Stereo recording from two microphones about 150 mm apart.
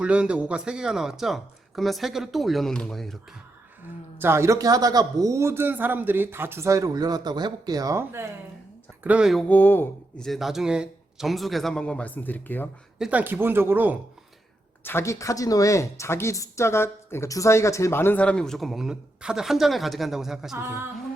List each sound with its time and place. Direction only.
0.0 s speech: 10° right (ahead or behind)
4.2 s a man's voice: 15° right (ahead or behind)
9.0 s speech: 5° right (ahead or behind)
9.5 s speech: 10° left (ahead or behind)
10.2 s speech: centre (ahead or behind)
13.0 s speech: 10° right (ahead or behind)
14.8 s speech: 20° left (ahead or behind); by 20.6 s 5° right (ahead or behind)
20.6 s speech: 15° right (ahead or behind)